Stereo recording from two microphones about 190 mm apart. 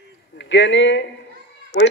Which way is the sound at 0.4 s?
75° left (ahead or behind).